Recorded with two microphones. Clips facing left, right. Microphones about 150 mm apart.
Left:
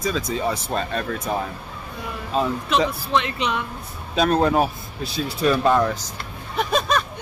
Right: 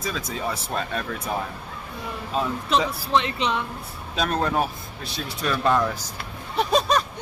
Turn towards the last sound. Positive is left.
turn(degrees=-35)  # may be behind; listen again after turning